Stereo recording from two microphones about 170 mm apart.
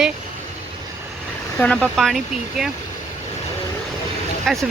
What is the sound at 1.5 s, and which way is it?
Speech, 5° left (ahead or behind).